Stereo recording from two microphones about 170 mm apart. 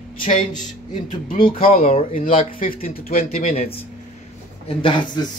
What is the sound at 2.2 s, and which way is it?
Speech, 55° left (ahead or behind).